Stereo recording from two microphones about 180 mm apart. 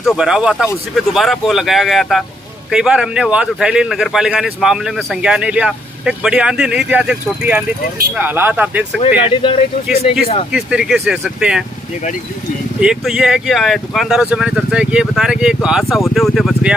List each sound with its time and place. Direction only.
0.0 s speech: centre (ahead or behind)
9.2 s speech: 30° left (ahead or behind)
10.5 s speech: 5° right (ahead or behind)
12.8 s speech: centre (ahead or behind)